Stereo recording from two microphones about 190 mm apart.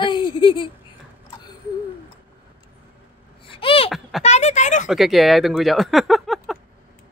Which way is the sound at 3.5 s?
30° left (ahead or behind).